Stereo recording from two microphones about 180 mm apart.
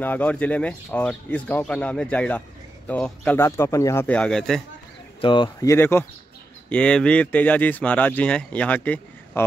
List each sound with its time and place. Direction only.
0.0 s speech: 10° left (ahead or behind)
5.2 s speech: 25° left (ahead or behind)
5.7 s speech: 15° left (ahead or behind)